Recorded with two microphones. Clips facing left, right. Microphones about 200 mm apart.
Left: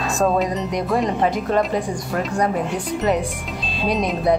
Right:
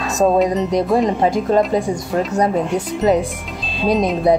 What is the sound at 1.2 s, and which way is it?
Speech, 25° right (ahead or behind).